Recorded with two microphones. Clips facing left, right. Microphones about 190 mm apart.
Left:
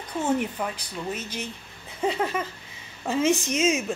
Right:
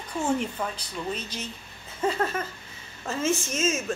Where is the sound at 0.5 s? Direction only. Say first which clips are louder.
Left 1 dB; 10° left (ahead or behind).